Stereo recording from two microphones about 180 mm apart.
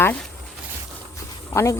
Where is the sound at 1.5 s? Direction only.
15° left (ahead or behind).